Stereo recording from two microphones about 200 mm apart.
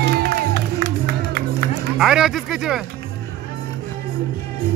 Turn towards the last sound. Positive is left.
turn(degrees=-5)  # may be behind; listen again after turning